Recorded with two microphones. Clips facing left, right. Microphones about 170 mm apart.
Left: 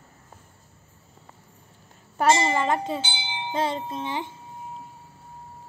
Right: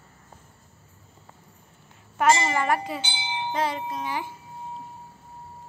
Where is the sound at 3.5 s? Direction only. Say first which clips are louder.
Left 2 dB; 25° left (ahead or behind).